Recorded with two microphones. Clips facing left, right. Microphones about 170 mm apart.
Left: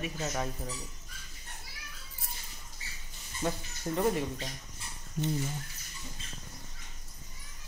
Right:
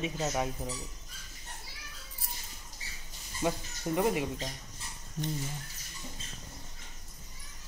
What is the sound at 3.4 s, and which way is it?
Speech, 15° right (ahead or behind).